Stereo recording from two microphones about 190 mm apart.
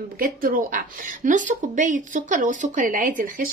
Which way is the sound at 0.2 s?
45° right (ahead or behind).